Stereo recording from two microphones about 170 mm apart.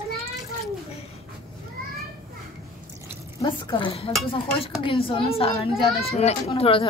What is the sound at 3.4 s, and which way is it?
Dishes, 30° left (ahead or behind).